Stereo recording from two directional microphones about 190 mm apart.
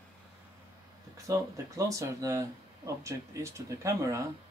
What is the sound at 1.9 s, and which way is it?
Speech, 15° right (ahead or behind).